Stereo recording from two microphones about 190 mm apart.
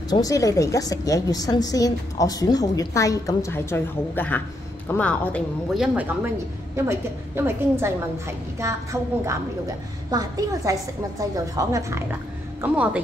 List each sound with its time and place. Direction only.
0.1 s a woman's voice: 20° left (ahead or behind)
5.8 s a woman's voice: 10° right (ahead or behind)
12.6 s a woman's voice: 5° right (ahead or behind)